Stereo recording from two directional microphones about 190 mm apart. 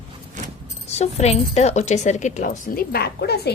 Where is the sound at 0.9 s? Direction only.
35° left (ahead or behind).